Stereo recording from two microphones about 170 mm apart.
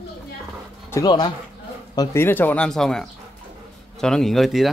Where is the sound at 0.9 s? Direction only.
20° left (ahead or behind).